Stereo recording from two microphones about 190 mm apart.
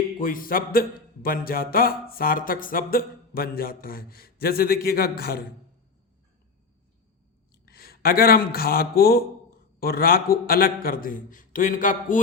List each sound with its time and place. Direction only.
0.2 s a man's voice: 45° left (ahead or behind)
7.6 s a man's voice: 50° left (ahead or behind)